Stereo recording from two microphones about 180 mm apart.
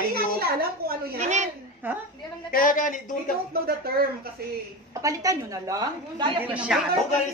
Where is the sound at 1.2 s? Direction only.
40° right (ahead or behind).